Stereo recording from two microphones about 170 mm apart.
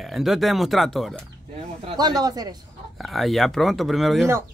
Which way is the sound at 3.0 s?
Centre (ahead or behind).